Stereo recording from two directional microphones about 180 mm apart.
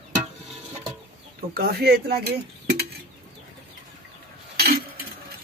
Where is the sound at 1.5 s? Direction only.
60° right (ahead or behind).